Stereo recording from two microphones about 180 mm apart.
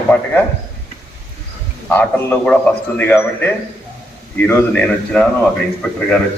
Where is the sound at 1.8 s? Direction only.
10° left (ahead or behind).